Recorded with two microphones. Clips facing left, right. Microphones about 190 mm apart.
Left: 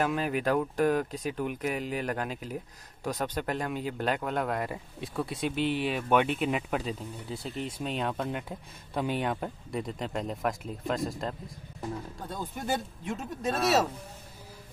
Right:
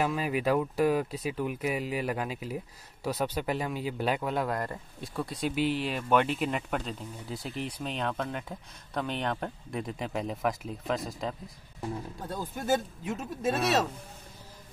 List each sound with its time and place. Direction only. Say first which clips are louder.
0.0 s speech: even; 5° right (ahead or behind)